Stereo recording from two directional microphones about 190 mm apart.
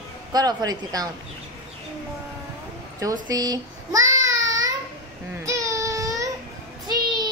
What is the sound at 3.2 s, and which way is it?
A child's voice, 20° right (ahead or behind).